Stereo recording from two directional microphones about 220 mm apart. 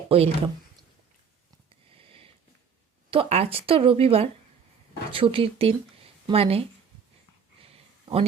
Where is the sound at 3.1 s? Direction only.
25° right (ahead or behind).